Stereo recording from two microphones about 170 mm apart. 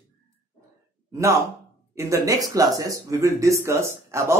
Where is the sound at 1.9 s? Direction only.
20° right (ahead or behind).